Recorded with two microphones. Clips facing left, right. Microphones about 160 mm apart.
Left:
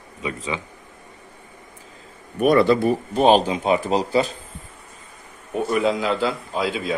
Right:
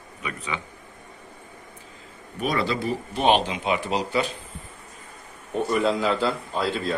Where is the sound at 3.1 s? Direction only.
40° left (ahead or behind).